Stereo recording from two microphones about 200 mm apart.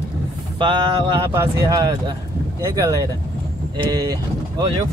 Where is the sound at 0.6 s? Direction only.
15° right (ahead or behind).